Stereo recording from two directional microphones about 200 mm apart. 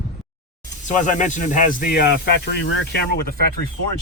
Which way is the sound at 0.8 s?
40° left (ahead or behind).